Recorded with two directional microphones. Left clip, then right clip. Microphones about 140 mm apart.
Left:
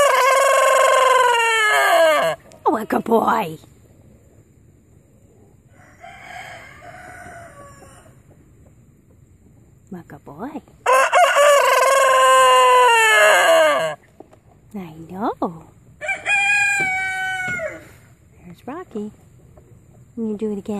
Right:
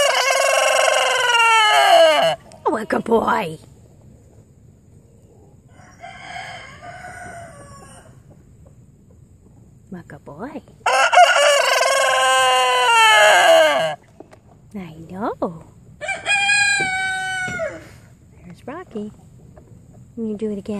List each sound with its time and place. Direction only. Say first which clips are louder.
0.0 s chicken: left 2 dB; 20° left (ahead or behind)
9.8 s chicken: even; 15° left (ahead or behind)
14.7 s crowing: left 1 dB; 15° left (ahead or behind)
18.5 s wild animals: left 1 dB; 20° left (ahead or behind)
20.2 s speech: left 1 dB; 20° left (ahead or behind)